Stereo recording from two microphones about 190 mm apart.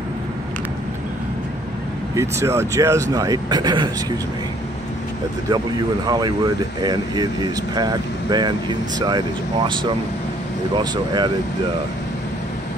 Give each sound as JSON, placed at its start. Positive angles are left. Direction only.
{"t": 2.1, "sound": "speech", "side_deg": -15}
{"t": 6.0, "sound": "speech", "side_deg": -20}